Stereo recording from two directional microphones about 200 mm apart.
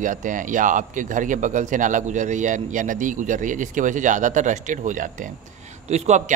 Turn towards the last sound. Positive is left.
turn(degrees=-35)  # may be behind; listen again after turning